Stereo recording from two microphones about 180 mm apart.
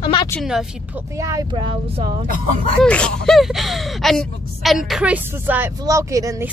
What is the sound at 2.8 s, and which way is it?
Speech, 5° left (ahead or behind).